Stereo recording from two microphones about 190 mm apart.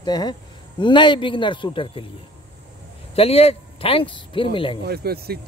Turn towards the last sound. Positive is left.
turn(degrees=-55)  # may be behind; listen again after turning